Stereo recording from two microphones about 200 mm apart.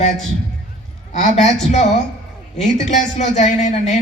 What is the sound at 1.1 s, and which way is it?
Speech, 35° left (ahead or behind).